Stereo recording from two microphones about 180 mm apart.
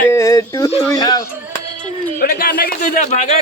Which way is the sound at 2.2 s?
55° left (ahead or behind).